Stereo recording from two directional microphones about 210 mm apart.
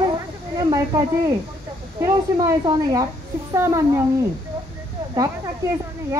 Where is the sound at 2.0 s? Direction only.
15° right (ahead or behind).